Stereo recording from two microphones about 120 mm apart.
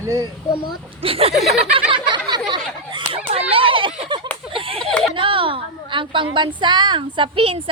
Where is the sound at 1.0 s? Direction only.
55° right (ahead or behind).